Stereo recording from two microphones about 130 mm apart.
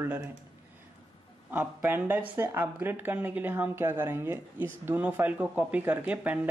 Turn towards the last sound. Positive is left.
turn(degrees=-10)  # may be behind; listen again after turning